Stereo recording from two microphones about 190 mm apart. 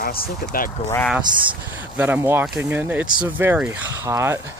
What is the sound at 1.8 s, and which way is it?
Speech, 10° right (ahead or behind).